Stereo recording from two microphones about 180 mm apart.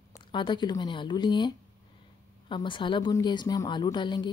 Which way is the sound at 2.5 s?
25° left (ahead or behind).